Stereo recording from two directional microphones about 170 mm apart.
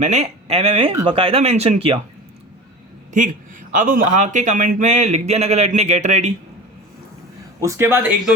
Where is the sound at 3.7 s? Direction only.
50° right (ahead or behind).